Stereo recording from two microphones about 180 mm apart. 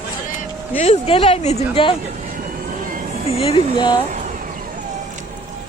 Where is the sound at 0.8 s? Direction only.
35° left (ahead or behind).